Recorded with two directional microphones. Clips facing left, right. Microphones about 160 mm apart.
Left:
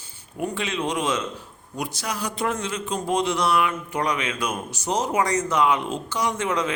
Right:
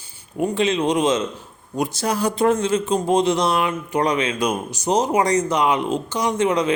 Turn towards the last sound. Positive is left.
turn(degrees=-20)  # may be behind; listen again after turning